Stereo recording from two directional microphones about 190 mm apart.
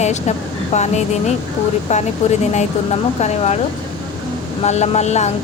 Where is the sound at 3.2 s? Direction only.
35° left (ahead or behind).